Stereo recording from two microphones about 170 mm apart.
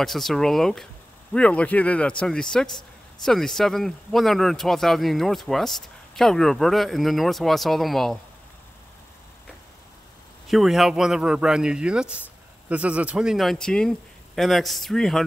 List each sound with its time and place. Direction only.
0.0 s speech: centre (ahead or behind)
10.5 s speech: centre (ahead or behind)